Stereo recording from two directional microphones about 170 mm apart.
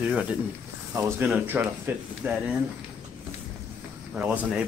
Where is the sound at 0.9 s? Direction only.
20° right (ahead or behind).